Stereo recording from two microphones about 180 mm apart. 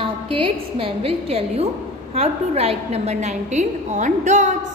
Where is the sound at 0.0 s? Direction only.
30° right (ahead or behind).